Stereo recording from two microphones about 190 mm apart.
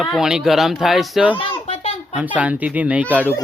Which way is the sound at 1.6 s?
35° left (ahead or behind).